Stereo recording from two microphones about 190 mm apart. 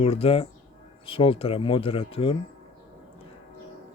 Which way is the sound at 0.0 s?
30° left (ahead or behind).